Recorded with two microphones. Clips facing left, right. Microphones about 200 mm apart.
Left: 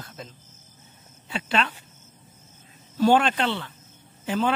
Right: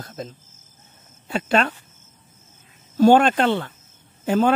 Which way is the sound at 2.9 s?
45° right (ahead or behind).